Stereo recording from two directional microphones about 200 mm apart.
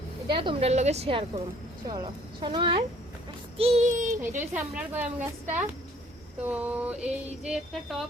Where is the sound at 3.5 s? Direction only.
30° right (ahead or behind).